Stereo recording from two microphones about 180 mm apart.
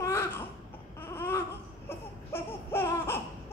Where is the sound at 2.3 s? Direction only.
15° left (ahead or behind).